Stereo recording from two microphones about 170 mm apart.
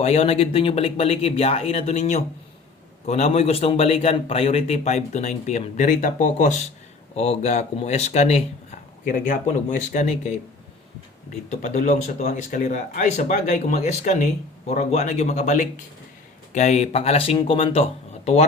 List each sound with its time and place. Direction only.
0.0 s a man's voice: 35° left (ahead or behind)
9.0 s speech: 50° left (ahead or behind)
11.5 s a man's voice: 45° left (ahead or behind)